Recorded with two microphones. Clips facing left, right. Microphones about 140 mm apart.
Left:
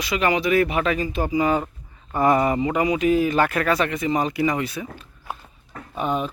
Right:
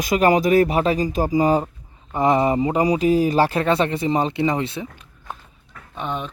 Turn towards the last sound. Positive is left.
turn(degrees=5)  # may be behind; listen again after turning